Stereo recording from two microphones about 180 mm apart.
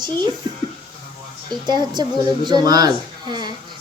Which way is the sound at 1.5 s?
25° right (ahead or behind).